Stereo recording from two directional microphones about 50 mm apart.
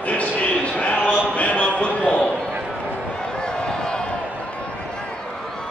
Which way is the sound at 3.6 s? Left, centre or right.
Centre.